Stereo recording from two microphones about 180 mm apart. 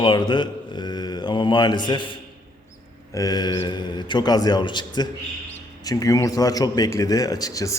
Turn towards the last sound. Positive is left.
turn(degrees=20)  # may be behind; listen again after turning